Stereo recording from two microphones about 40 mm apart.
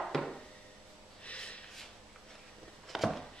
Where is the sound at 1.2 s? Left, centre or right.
Left.